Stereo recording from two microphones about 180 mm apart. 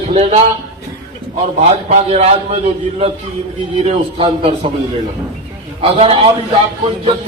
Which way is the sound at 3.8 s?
35° right (ahead or behind).